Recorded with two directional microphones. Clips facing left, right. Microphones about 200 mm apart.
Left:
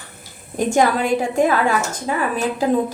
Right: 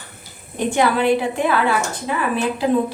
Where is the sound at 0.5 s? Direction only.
45° left (ahead or behind).